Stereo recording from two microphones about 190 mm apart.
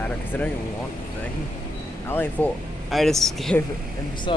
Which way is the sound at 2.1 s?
10° left (ahead or behind).